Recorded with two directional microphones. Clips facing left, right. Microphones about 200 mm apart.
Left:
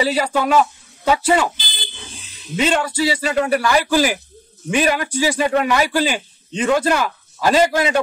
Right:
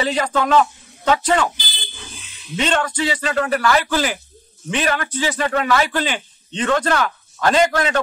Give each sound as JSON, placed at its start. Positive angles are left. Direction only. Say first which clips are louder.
{"t": 0.0, "sound": "speech", "louder": "left 1 dB", "side_deg": 10}
{"t": 2.0, "sound": "a sound", "louder": "left 1 dB", "side_deg": 35}
{"t": 2.5, "sound": "a man's voice", "louder": "left 2 dB", "side_deg": 10}